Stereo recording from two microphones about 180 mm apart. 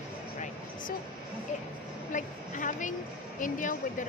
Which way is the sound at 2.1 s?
45° left (ahead or behind).